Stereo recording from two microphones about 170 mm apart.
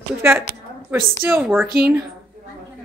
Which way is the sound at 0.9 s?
10° right (ahead or behind).